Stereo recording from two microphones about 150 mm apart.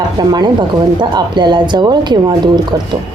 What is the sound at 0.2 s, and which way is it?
Speech, 25° right (ahead or behind).